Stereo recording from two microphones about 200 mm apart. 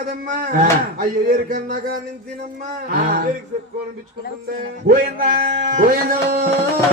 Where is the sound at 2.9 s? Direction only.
45° right (ahead or behind).